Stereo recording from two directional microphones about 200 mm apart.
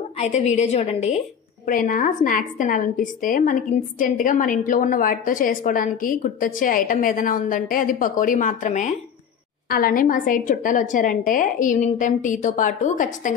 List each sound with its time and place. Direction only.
0.2 s a woman's voice: 35° left (ahead or behind)